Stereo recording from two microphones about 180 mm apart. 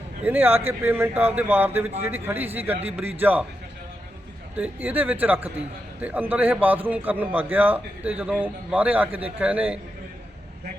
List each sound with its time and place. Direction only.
0.3 s a man's voice: 10° right (ahead or behind)
4.5 s a man's voice: 10° right (ahead or behind)